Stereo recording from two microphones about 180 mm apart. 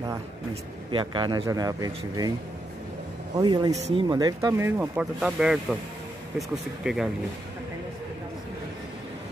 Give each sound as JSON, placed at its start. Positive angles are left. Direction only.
{"t": 0.9, "sound": "speech", "side_deg": -25}
{"t": 3.3, "sound": "speech", "side_deg": -20}
{"t": 3.7, "sound": "speech", "side_deg": -35}
{"t": 4.1, "sound": "speech", "side_deg": -20}